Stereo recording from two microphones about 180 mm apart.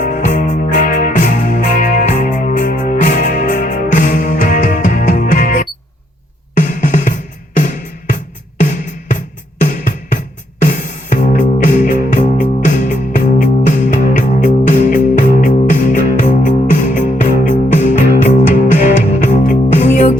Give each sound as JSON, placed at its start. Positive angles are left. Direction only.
{"t": 0.0, "sound": "music", "side_deg": 45}
{"t": 6.6, "sound": "drum", "side_deg": 45}
{"t": 7.5, "sound": "music", "side_deg": 45}